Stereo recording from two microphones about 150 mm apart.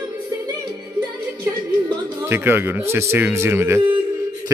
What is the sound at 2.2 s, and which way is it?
A man's voice, 15° right (ahead or behind).